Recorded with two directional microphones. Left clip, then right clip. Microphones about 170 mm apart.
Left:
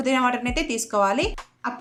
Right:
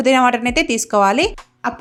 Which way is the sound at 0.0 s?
45° right (ahead or behind).